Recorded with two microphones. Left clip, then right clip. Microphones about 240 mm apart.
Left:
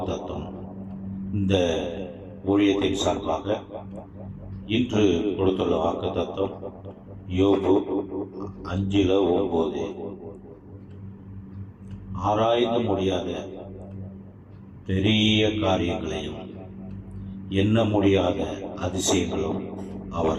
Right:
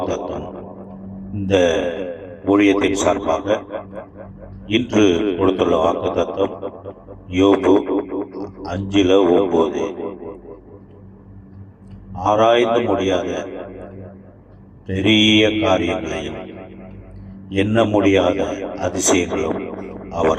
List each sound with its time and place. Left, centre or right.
0.0 s a sound: right
1.5 s a man's voice: right
8.4 s a man's voice: centre
8.7 s a man's voice: right
12.3 s a man's voice: right
15.0 s a man's voice: right
17.7 s a man's voice: right